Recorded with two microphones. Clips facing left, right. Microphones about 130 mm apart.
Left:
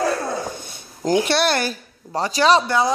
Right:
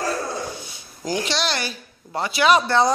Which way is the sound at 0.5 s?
50° left (ahead or behind).